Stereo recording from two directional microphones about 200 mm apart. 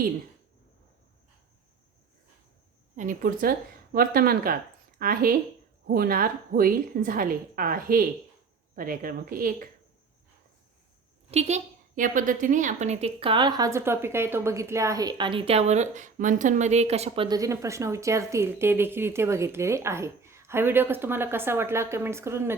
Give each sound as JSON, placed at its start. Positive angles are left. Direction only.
{"t": 2.9, "sound": "a woman's voice", "side_deg": -40}
{"t": 11.3, "sound": "a woman's voice", "side_deg": -35}
{"t": 17.2, "sound": "speech", "side_deg": -20}